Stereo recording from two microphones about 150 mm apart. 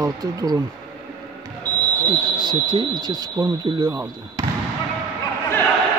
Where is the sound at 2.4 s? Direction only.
30° right (ahead or behind).